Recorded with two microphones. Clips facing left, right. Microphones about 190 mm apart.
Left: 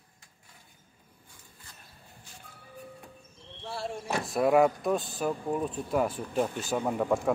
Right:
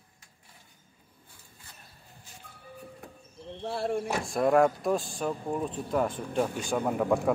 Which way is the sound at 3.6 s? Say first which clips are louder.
Right 6 dB; 55° right (ahead or behind).